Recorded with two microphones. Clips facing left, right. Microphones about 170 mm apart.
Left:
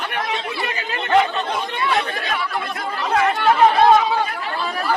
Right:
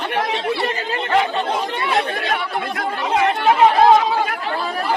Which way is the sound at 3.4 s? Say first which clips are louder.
Right 1 dB; 15° right (ahead or behind).